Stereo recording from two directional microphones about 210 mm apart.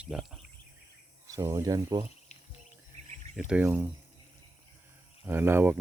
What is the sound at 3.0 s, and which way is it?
Cricket, 30° right (ahead or behind).